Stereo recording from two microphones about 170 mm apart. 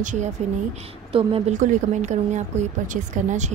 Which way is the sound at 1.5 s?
45° right (ahead or behind).